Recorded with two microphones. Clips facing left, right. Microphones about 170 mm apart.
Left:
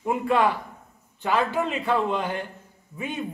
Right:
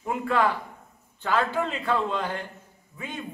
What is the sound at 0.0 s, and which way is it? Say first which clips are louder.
A man's voice: left 3 dB; 20° left (ahead or behind).